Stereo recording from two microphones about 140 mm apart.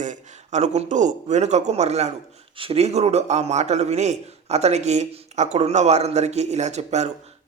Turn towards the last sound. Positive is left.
turn(degrees=-55)  # may be behind; listen again after turning